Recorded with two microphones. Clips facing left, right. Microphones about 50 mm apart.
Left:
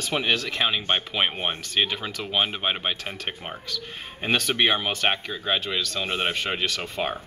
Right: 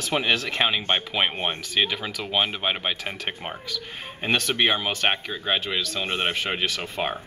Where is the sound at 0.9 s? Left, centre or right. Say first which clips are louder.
Right 1 dB; centre.